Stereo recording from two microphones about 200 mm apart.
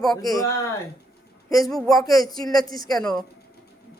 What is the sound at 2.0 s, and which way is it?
Speech, 15° left (ahead or behind).